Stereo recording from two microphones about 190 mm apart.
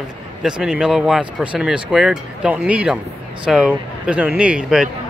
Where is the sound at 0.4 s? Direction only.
5° right (ahead or behind).